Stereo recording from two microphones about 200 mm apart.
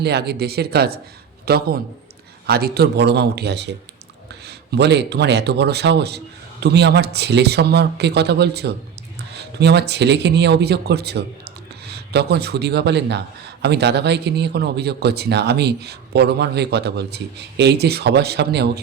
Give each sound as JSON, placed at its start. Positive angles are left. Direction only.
{"t": 0.0, "sound": "speech", "side_deg": -55}